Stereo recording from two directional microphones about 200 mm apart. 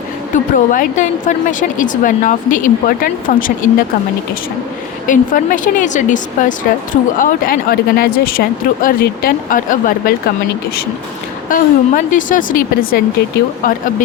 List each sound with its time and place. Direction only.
0.3 s a woman's voice: 40° left (ahead or behind)
5.0 s a woman's voice: 40° left (ahead or behind)
11.4 s speech: 40° left (ahead or behind)
13.6 s speech: 45° left (ahead or behind)